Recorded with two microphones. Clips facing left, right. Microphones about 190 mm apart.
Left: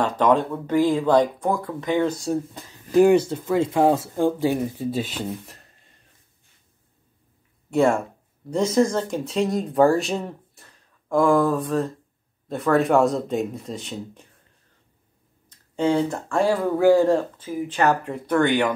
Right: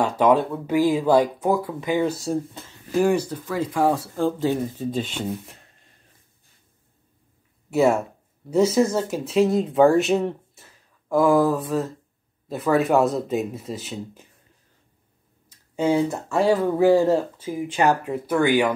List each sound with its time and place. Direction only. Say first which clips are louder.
0.0 s speech: right 1 dB; 10° right (ahead or behind)
2.5 s speech: left 5 dB; 15° left (ahead or behind); by 5.7 s centre (ahead or behind)
7.7 s speech: even; 5° right (ahead or behind)
15.7 s speech: even; 10° right (ahead or behind)